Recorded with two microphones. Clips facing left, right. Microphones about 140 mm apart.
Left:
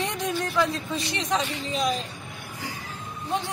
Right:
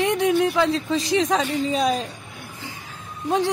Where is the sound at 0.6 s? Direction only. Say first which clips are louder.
Right 5 dB; 90° right.